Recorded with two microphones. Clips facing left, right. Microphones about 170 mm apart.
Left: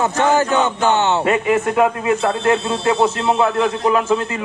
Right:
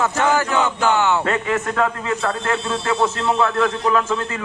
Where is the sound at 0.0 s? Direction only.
20° left (ahead or behind).